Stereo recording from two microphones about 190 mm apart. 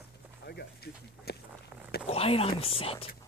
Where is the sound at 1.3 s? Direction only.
55° left (ahead or behind).